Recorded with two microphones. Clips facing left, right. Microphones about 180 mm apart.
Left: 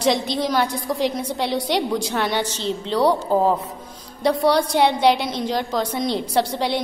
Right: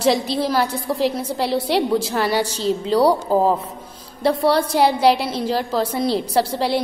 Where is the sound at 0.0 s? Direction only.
5° right (ahead or behind).